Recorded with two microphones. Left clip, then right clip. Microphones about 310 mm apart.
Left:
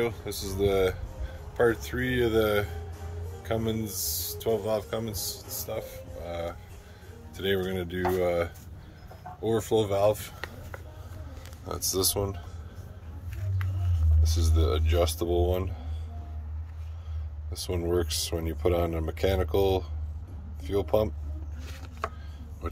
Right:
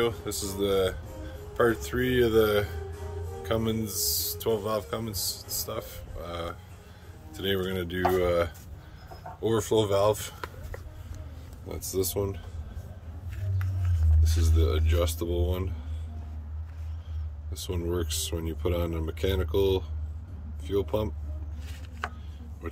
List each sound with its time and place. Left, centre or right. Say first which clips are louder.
0.3 s speech: left 1 dB; right
0.7 s speech: left 1 dB; centre
11.7 s speech: left 2 dB; centre
14.2 s speech: even; centre
17.6 s speech: left 3 dB; centre